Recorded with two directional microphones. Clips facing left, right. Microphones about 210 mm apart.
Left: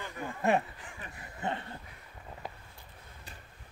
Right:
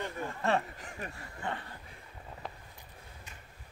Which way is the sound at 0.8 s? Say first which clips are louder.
Right 5 dB; 45° right (ahead or behind).